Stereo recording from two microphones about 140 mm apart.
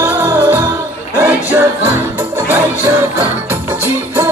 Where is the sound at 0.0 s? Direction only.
15° right (ahead or behind).